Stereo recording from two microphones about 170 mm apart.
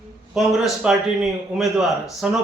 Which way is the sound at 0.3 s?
Centre (ahead or behind).